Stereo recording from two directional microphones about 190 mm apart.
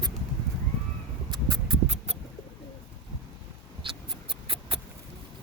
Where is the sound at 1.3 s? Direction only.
25° right (ahead or behind).